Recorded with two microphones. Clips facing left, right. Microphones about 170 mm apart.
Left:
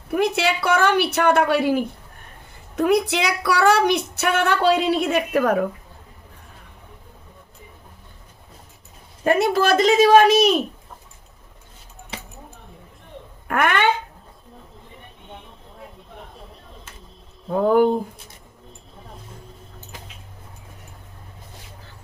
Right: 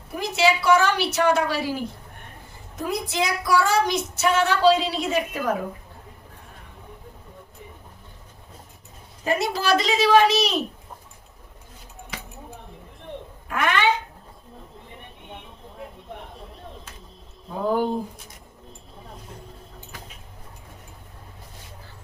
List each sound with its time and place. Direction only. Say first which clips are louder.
0.1 s a woman's voice: left 2 dB; 60° left (ahead or behind)
9.2 s a woman's voice: left 6 dB; 55° left (ahead or behind)
12.1 s a sound: left 2 dB; 25° left (ahead or behind)
13.5 s a woman's voice: left 3 dB; 55° left (ahead or behind)
16.3 s a sound: right 1 dB; centre (ahead or behind)
17.5 s a woman's voice: left 6 dB; 45° left (ahead or behind)